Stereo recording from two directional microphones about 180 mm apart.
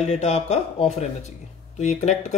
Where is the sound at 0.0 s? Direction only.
40° left (ahead or behind).